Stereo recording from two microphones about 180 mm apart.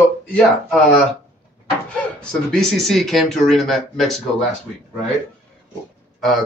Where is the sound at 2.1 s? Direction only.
5° left (ahead or behind).